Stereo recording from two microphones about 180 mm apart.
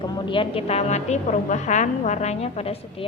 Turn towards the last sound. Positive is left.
turn(degrees=35)  # may be behind; listen again after turning